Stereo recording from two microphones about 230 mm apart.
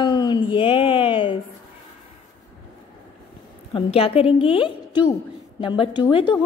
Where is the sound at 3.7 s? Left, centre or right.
Left.